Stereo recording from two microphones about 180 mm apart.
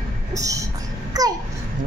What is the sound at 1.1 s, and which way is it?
Babbling, 20° right (ahead or behind).